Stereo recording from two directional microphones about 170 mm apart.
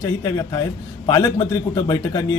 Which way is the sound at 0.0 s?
20° left (ahead or behind).